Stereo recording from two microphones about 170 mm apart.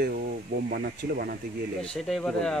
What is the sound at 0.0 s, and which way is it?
Speech, 60° right (ahead or behind).